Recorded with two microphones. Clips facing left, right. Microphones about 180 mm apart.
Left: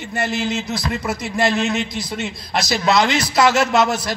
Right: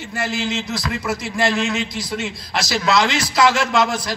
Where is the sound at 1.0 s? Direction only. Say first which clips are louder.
Left 1 dB; 20° left (ahead or behind).